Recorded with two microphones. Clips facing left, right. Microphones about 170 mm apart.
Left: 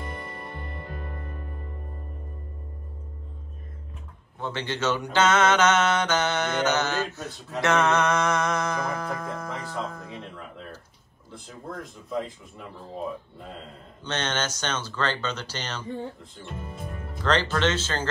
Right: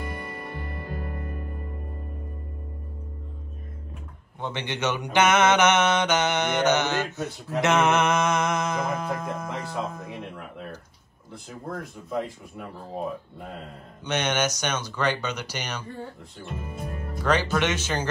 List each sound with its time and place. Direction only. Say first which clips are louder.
4.4 s mantra: even; 20° right (ahead or behind)
7.6 s music: right 1 dB; 20° right (ahead or behind)
11.3 s speech: right 2 dB; centre (ahead or behind)
14.0 s mantra: right 4 dB; 15° right (ahead or behind)
16.4 s speech: right 2 dB; centre (ahead or behind)
17.3 s mantra: even; 10° right (ahead or behind)